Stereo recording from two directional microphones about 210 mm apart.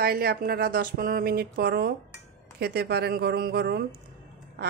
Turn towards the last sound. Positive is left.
turn(degrees=-50)  # may be behind; listen again after turning